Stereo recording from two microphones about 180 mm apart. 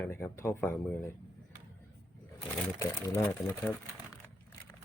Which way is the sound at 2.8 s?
15° left (ahead or behind).